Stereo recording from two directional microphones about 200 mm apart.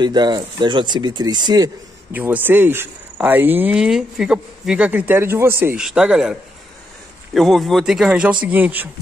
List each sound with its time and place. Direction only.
0.0 s speech: 20° right (ahead or behind)
2.1 s speech: 10° right (ahead or behind)
7.3 s a man's voice: centre (ahead or behind)